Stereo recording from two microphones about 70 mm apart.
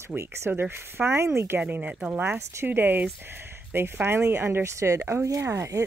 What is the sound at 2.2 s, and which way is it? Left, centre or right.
Speech, right.